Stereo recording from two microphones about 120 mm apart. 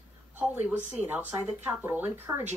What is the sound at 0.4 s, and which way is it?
Speech, 15° right (ahead or behind).